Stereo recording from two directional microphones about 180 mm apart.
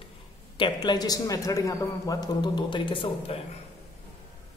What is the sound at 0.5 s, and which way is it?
A man's voice, 25° left (ahead or behind).